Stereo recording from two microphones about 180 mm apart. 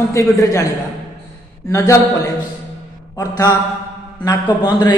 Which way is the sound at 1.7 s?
15° left (ahead or behind).